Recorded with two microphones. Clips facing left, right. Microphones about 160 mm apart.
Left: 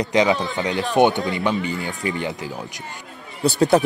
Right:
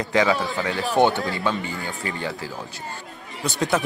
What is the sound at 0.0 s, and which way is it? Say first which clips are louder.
Speech: left 2 dB; 20° left (ahead or behind).